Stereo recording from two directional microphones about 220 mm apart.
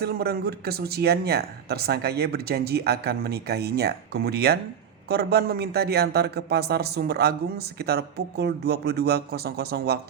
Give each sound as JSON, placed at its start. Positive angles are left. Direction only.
{"t": 0.0, "sound": "a man's voice", "side_deg": -45}